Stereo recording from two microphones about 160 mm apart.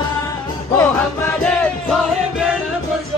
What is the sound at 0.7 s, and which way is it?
Music, 10° left (ahead or behind).